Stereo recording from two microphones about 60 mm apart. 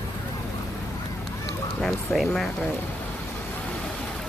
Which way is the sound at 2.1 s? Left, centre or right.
Centre.